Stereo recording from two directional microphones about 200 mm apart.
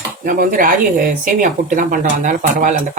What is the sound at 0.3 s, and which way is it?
Speech, 45° right (ahead or behind).